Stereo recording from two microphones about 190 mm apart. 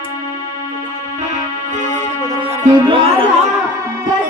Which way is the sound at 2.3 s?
25° right (ahead or behind).